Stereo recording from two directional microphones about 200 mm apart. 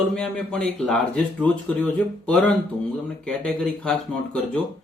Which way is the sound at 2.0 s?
5° left (ahead or behind).